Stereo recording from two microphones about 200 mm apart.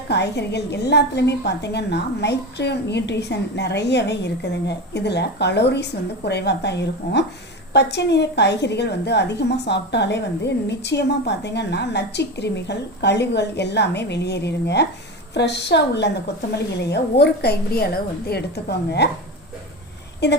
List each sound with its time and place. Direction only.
0.1 s a woman's voice: 55° left (ahead or behind)